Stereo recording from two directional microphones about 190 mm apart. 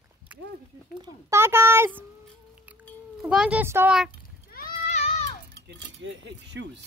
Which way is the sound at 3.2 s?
5° right (ahead or behind).